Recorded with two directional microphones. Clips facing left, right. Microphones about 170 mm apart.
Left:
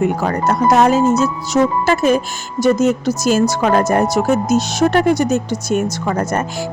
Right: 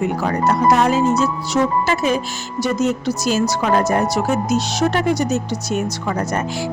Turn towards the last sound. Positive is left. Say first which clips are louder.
# left 3 dB
turn(degrees=50)  # may be behind; listen again after turning